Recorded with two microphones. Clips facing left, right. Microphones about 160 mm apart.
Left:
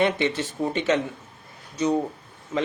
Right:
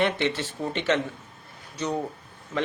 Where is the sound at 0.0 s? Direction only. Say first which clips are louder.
Left 2 dB; 10° left (ahead or behind).